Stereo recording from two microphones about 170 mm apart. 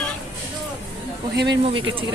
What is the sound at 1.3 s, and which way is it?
Speech, 90° right.